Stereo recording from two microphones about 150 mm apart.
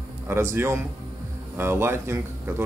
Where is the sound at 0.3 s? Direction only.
15° right (ahead or behind).